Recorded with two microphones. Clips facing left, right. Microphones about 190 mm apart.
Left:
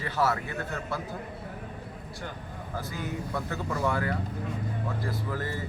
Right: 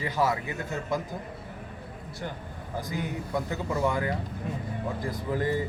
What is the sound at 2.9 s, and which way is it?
Speech, 15° right (ahead or behind).